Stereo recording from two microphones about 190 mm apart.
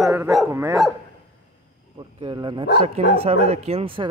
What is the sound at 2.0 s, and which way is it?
Speech, 25° right (ahead or behind).